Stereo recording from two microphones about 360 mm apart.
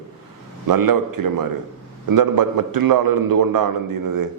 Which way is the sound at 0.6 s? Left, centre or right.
Right.